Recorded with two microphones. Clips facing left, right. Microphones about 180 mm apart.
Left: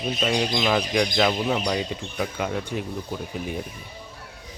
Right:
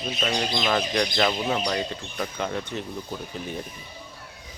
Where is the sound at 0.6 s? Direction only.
5° left (ahead or behind).